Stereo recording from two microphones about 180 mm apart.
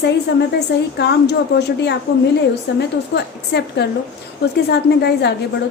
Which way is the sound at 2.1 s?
65° left (ahead or behind).